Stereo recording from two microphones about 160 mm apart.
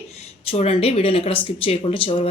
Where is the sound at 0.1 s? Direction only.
40° left (ahead or behind).